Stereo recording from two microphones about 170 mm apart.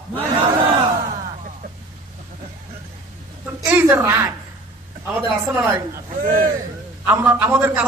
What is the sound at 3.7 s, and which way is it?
Speech, 15° right (ahead or behind).